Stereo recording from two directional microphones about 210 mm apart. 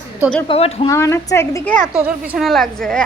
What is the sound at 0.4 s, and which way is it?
Speech, 30° left (ahead or behind).